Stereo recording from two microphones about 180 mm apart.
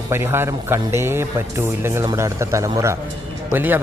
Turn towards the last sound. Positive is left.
turn(degrees=-10)  # may be behind; listen again after turning